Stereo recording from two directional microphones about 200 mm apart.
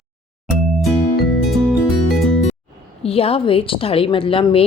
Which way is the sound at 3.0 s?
30° left (ahead or behind).